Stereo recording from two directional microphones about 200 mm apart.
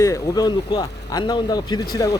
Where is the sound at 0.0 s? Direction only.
20° left (ahead or behind).